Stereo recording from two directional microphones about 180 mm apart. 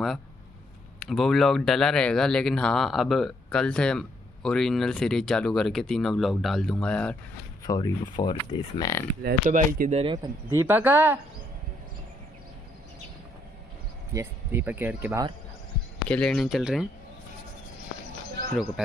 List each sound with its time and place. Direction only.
0.9 s speech: centre (ahead or behind)
7.6 s speech: 20° left (ahead or behind)
9.5 s speech: 45° right (ahead or behind)
9.9 s speech: 25° right (ahead or behind)
10.6 s speech: 10° right (ahead or behind)
14.1 s speech: 10° right (ahead or behind)
16.1 s speech: 5° left (ahead or behind)